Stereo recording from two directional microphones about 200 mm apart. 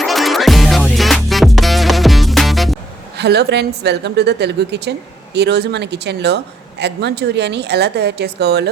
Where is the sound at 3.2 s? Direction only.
55° right (ahead or behind).